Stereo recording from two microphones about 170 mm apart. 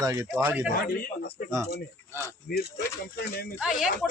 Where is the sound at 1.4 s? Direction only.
60° left (ahead or behind).